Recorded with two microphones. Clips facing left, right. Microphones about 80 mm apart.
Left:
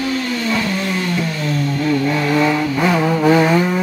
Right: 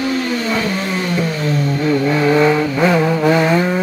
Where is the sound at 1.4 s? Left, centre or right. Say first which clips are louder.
Right 2 dB; centre.